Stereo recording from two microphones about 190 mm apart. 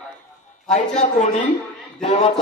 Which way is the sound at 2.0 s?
25° left (ahead or behind).